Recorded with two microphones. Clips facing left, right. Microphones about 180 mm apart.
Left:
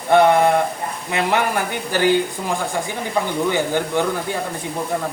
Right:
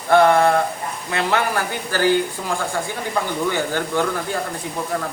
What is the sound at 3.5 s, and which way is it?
Speech, 15° left (ahead or behind).